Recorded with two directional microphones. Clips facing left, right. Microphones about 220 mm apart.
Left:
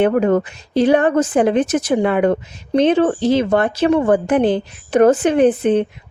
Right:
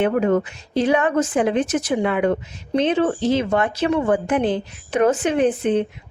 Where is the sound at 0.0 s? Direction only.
40° left (ahead or behind).